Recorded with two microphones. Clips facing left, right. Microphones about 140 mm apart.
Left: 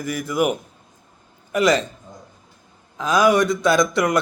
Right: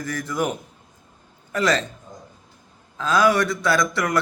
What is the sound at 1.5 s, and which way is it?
Speech, 15° left (ahead or behind).